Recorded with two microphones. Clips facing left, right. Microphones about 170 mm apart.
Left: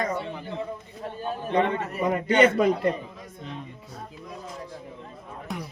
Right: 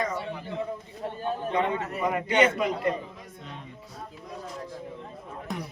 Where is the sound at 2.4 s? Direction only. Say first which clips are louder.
Left 4 dB; 35° left (ahead or behind).